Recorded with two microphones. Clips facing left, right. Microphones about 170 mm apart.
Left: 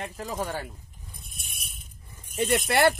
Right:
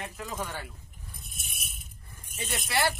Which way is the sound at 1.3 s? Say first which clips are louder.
Even; centre (ahead or behind).